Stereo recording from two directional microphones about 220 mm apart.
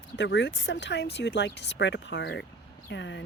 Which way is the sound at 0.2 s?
55° left (ahead or behind).